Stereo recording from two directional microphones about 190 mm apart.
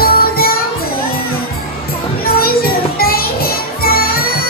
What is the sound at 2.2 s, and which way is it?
Music, 50° left (ahead or behind).